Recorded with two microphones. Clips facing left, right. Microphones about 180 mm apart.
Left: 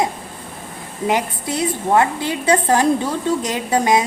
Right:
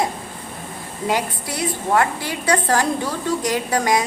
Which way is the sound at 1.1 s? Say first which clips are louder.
Left 3 dB; 20° left (ahead or behind).